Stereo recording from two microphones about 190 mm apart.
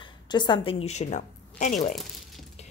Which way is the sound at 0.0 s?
25° left (ahead or behind).